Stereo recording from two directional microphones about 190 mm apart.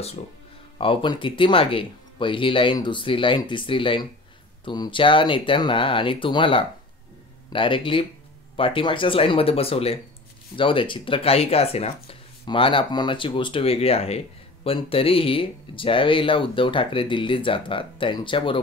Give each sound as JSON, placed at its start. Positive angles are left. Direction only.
{"t": 0.7, "sound": "speech", "side_deg": 25}